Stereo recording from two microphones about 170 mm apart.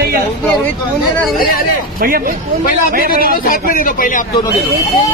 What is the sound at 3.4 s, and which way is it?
Speech, 55° left (ahead or behind).